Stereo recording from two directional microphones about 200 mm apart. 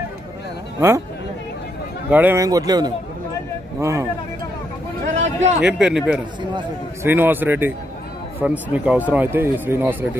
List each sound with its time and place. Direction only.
0.7 s speech: 10° right (ahead or behind)
2.0 s a man's voice: 10° right (ahead or behind)
5.0 s a sound: 35° right (ahead or behind)
5.6 s a man's voice: 5° right (ahead or behind)